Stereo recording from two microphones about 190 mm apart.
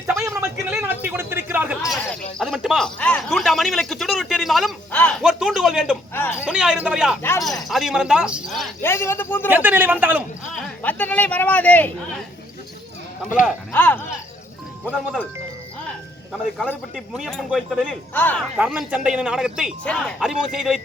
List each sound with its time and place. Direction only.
0.1 s a sound: 15° right (ahead or behind); by 2.1 s centre (ahead or behind)
2.4 s speech: centre (ahead or behind)
5.2 s speech: centre (ahead or behind)
7.2 s speech: 10° left (ahead or behind)
7.7 s speech: centre (ahead or behind)
8.8 s speech: 15° left (ahead or behind)
9.5 s a man's voice: 10° right (ahead or behind)
10.8 s speech: 10° left (ahead or behind)
13.7 s speech: 10° left (ahead or behind)
16.6 s speech: centre (ahead or behind)
18.1 s speech: 10° left (ahead or behind)
18.5 s speech: 5° right (ahead or behind)